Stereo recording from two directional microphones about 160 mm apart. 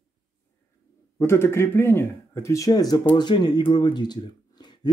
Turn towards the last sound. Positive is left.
turn(degrees=25)  # may be behind; listen again after turning